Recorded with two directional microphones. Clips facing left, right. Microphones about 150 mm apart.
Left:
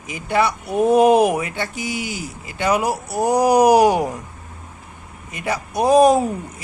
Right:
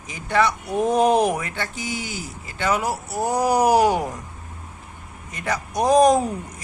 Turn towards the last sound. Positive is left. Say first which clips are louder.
# left 2 dB
turn(degrees=5)  # may be behind; listen again after turning